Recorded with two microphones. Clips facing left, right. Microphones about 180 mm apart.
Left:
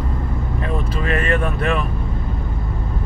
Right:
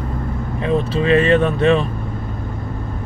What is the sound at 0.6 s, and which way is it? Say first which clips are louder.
Speech: right 8 dB; 25° right (ahead or behind).